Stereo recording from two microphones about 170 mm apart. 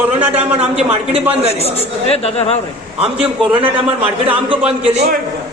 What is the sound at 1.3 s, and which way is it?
Speech, 35° right (ahead or behind).